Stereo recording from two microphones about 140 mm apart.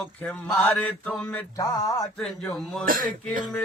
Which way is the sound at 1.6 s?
25° left (ahead or behind).